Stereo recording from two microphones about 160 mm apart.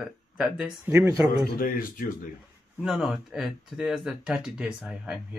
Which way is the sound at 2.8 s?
5° right (ahead or behind).